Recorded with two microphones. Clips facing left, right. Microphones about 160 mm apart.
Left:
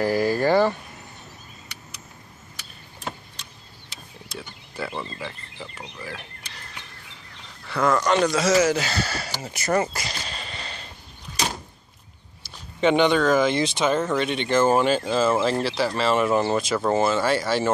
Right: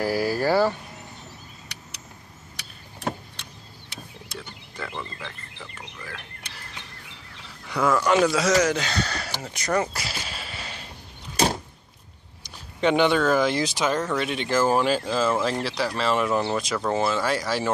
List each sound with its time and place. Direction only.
0.0 s speech: 10° right (ahead or behind)
2.5 s vehicle: 65° right (ahead or behind)
4.4 s wild animals: 10° left (ahead or behind)
7.6 s speech: 10° right (ahead or behind)
12.4 s a sound: 15° right (ahead or behind)
12.8 s speech: 5° right (ahead or behind)